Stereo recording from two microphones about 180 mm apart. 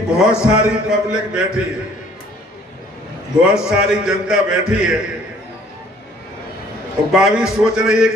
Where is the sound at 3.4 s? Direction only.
5° right (ahead or behind).